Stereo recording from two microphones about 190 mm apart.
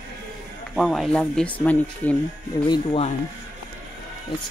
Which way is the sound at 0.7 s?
Centre (ahead or behind).